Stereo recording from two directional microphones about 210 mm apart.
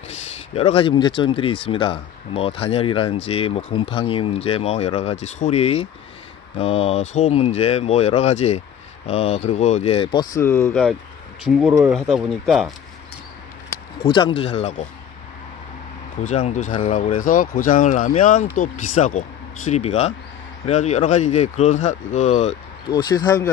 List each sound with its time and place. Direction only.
0.1 s speech: 30° left (ahead or behind)
10.3 s speech: 10° left (ahead or behind)
11.4 s speech: 5° right (ahead or behind)
14.0 s speech: 25° left (ahead or behind)
16.3 s speech: 35° left (ahead or behind)
22.8 s speech: 20° left (ahead or behind)